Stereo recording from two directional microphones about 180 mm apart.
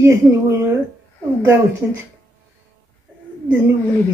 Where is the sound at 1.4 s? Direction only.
15° right (ahead or behind).